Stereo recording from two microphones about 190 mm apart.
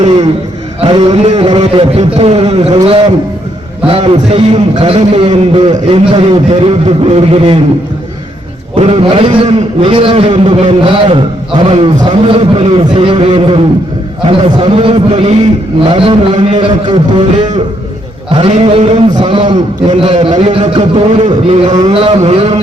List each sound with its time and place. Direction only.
0.8 s a man's voice: 30° right (ahead or behind)
3.8 s a man's voice: 30° right (ahead or behind)
8.7 s a man's voice: 30° right (ahead or behind)